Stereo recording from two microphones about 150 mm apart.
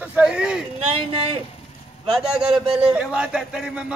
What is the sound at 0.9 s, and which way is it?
Speech, 40° right (ahead or behind).